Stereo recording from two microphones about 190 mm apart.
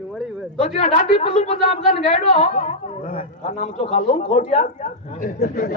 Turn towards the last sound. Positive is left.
turn(degrees=50)  # may be behind; listen again after turning